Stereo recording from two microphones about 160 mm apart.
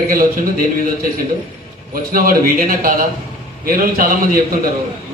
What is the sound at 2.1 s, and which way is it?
A man's voice, 60° right (ahead or behind).